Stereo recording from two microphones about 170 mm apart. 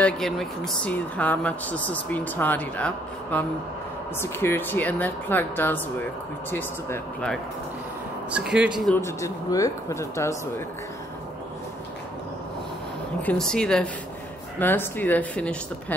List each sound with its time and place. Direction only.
0.0 s speech: centre (ahead or behind)
8.3 s a woman's voice: 5° right (ahead or behind)
8.9 s speech: 15° left (ahead or behind)
13.2 s a woman's voice: 5° left (ahead or behind)